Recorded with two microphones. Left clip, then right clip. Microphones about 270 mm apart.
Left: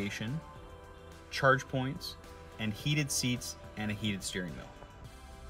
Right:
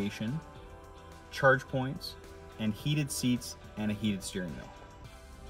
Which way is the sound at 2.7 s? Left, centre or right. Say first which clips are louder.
Left 5 dB; left.